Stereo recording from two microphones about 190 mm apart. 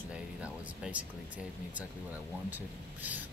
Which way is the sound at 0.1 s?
5° right (ahead or behind).